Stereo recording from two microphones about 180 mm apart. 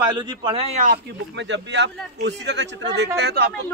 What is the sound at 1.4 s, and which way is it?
A man's voice, 80° right.